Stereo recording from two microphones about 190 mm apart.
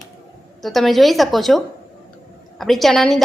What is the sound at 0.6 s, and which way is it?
A woman's voice, centre (ahead or behind).